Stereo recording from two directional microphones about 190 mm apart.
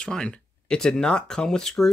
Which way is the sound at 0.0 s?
5° left (ahead or behind).